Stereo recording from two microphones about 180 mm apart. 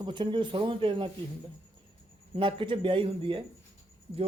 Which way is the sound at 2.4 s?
30° right (ahead or behind).